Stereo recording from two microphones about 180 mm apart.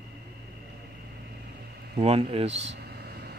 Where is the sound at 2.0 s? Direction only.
35° right (ahead or behind).